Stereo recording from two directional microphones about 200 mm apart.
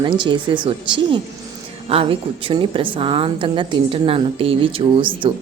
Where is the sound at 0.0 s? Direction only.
25° right (ahead or behind).